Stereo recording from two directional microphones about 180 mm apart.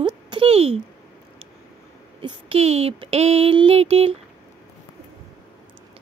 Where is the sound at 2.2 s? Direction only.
30° right (ahead or behind).